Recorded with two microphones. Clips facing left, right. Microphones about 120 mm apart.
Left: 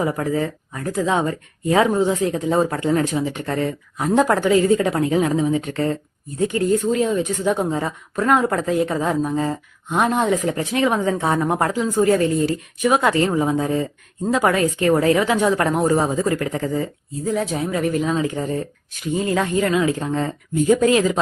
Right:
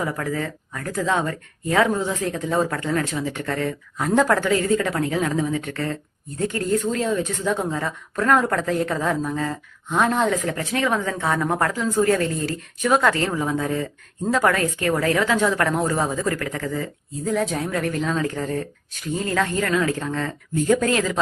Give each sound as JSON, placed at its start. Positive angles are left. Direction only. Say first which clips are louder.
{"t": 0.0, "sound": "a woman's voice", "louder": "left 5 dB", "side_deg": 25}
{"t": 17.2, "sound": "a woman's voice", "louder": "left 1 dB", "side_deg": 0}